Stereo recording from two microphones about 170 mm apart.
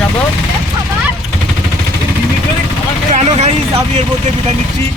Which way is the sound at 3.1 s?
45° right (ahead or behind).